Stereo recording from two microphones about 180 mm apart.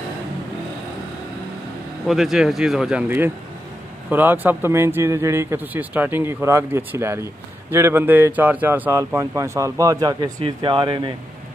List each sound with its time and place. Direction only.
2.0 s speech: centre (ahead or behind); by 11.1 s 25° right (ahead or behind)